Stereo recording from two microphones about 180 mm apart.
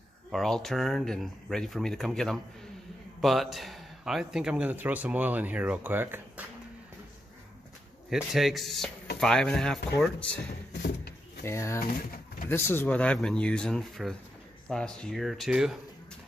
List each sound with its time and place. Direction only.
0.3 s a man's voice: centre (ahead or behind)
8.1 s speech: centre (ahead or behind)
10.7 s a sound: 65° left (ahead or behind)
11.4 s speech: 15° left (ahead or behind)
11.9 s speech: 50° left (ahead or behind)
12.4 s speech: 10° left (ahead or behind)